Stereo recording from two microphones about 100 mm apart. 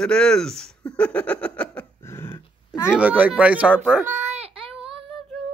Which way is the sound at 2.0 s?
25° left (ahead or behind).